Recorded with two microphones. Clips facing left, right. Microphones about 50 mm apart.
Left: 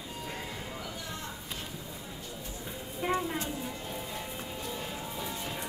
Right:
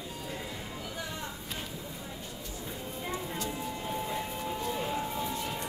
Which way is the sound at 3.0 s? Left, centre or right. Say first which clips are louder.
Left 6 dB; left.